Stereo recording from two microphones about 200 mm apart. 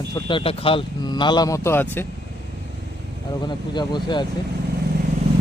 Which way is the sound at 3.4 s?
20° left (ahead or behind).